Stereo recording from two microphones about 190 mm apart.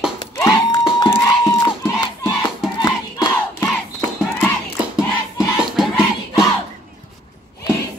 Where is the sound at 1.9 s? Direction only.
20° left (ahead or behind).